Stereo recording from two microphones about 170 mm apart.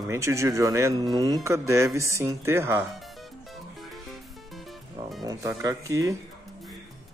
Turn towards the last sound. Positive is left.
turn(degrees=-20)  # may be behind; listen again after turning